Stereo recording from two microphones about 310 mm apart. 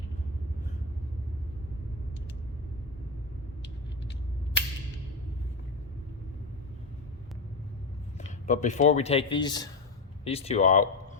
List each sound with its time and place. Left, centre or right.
8.4 s speech: left